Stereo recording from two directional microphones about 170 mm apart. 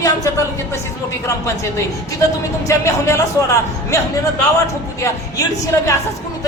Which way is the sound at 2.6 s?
15° left (ahead or behind).